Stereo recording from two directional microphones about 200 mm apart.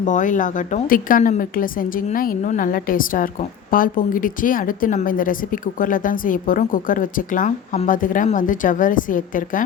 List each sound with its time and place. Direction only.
0.0 s a woman's voice: 40° left (ahead or behind)